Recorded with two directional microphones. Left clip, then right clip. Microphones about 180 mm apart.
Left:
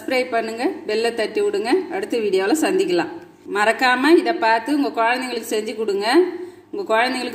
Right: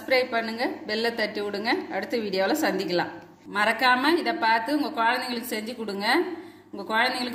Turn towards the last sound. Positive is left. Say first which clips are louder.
# left 5 dB
turn(degrees=30)  # may be behind; listen again after turning